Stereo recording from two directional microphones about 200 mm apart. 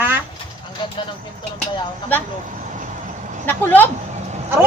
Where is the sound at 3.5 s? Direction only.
10° left (ahead or behind).